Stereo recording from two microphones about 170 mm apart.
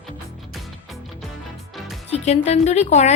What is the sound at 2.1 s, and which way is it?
A woman's voice, 40° left (ahead or behind).